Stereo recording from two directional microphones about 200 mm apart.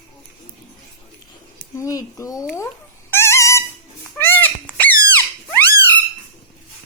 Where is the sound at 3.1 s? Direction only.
15° left (ahead or behind).